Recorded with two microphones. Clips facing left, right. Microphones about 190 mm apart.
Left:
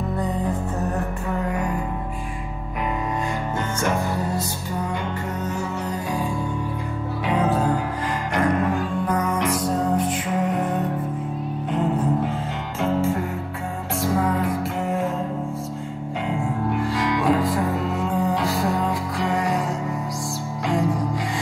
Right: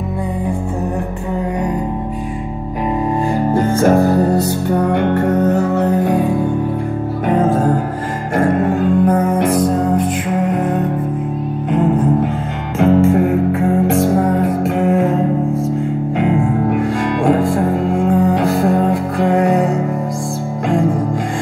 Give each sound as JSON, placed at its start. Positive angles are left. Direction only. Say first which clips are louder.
{"t": 3.3, "sound": "music", "louder": "right 11 dB", "side_deg": -35}
{"t": 4.1, "sound": "music", "louder": "right 12 dB", "side_deg": -60}
{"t": 7.2, "sound": "music", "louder": "right 7 dB", "side_deg": -45}
{"t": 11.7, "sound": "music", "louder": "right 8 dB", "side_deg": -55}